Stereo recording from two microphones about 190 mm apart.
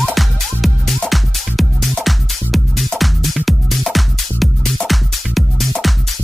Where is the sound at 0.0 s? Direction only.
Centre (ahead or behind).